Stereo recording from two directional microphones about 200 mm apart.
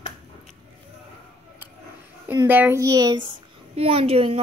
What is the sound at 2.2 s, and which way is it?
A child's voice, 10° right (ahead or behind).